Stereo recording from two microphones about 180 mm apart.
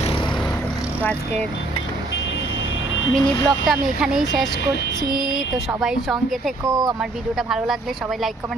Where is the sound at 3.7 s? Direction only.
Centre (ahead or behind).